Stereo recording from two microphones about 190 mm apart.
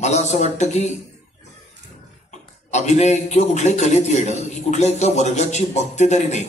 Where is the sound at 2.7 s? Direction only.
35° left (ahead or behind).